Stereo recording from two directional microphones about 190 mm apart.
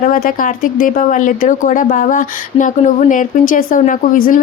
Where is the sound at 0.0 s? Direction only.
45° left (ahead or behind).